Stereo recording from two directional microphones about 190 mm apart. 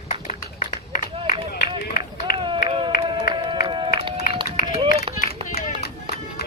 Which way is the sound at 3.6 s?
25° right (ahead or behind).